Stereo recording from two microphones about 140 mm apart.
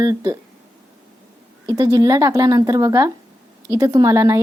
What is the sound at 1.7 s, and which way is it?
A woman's voice, 25° right (ahead or behind).